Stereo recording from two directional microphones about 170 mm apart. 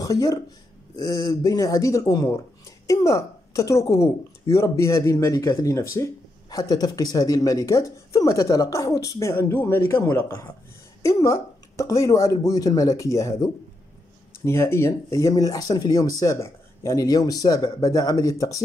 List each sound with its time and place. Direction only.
0.0 s a woman's voice: 20° left (ahead or behind)